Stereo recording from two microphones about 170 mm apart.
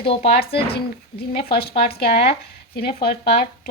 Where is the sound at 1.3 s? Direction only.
65° left (ahead or behind).